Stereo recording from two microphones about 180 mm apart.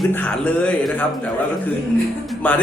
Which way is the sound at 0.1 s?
10° left (ahead or behind).